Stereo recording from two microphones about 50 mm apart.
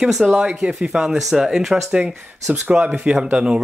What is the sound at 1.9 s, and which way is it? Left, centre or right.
Speech, right.